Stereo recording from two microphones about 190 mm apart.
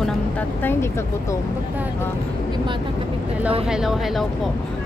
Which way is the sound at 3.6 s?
Centre (ahead or behind).